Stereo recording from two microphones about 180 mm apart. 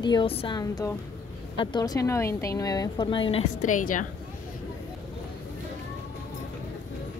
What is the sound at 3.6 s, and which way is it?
Speech, 45° left (ahead or behind).